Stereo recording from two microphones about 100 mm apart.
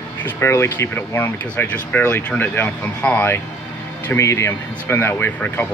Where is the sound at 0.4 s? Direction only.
25° left (ahead or behind).